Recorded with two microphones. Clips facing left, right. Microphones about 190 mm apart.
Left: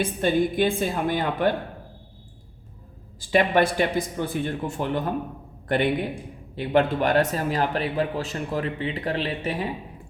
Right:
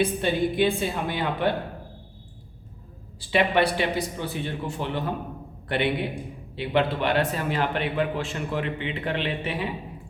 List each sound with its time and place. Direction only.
0.2 s speech: 45° left (ahead or behind)
3.2 s a man's voice: 45° left (ahead or behind)